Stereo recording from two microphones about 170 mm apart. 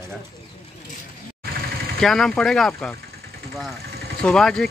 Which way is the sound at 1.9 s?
5° left (ahead or behind).